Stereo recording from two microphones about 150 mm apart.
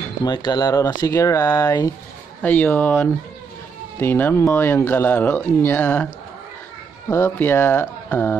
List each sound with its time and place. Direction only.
0.2 s speech: 30° left (ahead or behind); by 2.9 s 10° left (ahead or behind)
4.0 s speech: 15° left (ahead or behind)
7.1 s speech: 20° left (ahead or behind)